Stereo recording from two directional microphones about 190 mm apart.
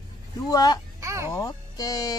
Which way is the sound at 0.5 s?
20° left (ahead or behind).